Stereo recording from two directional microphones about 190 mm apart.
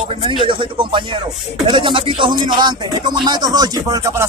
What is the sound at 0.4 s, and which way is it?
Speech, 25° right (ahead or behind).